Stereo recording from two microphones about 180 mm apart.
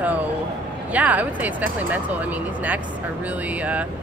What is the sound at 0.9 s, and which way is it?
Speech, 10° right (ahead or behind).